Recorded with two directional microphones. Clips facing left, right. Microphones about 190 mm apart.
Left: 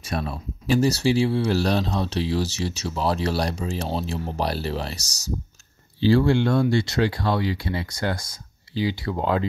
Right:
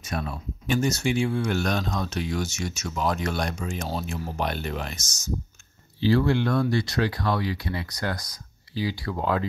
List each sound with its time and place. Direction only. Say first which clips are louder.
0.0 s speech: left 3 dB; 30° left (ahead or behind)